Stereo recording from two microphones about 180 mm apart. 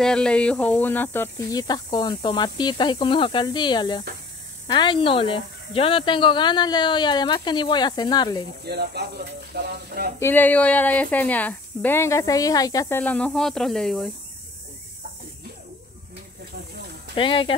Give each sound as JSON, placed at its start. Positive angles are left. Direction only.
{"t": 0.0, "sound": "speech", "side_deg": 5}
{"t": 8.6, "sound": "speech", "side_deg": -65}
{"t": 10.1, "sound": "a woman's voice", "side_deg": 10}
{"t": 17.1, "sound": "speech", "side_deg": 30}